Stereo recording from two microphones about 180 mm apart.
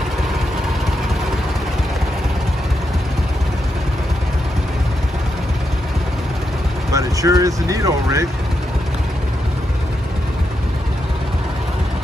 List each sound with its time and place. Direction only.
6.9 s speech: 20° right (ahead or behind)